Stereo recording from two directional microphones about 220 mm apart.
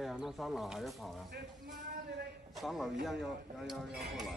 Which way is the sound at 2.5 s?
Centre (ahead or behind).